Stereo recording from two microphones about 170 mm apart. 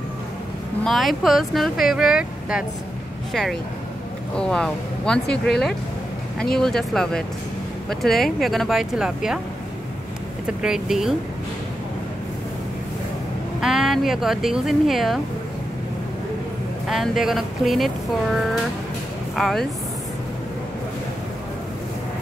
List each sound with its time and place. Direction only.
0.8 s speech: centre (ahead or behind)
4.4 s speech: 5° left (ahead or behind)
6.5 s speech: 5° left (ahead or behind)
10.4 s speech: 5° right (ahead or behind)
13.6 s speech: 5° right (ahead or behind)
16.8 s speech: centre (ahead or behind)